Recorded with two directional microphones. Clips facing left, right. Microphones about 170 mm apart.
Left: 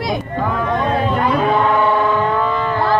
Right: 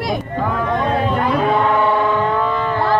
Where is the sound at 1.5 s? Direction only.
40° right (ahead or behind).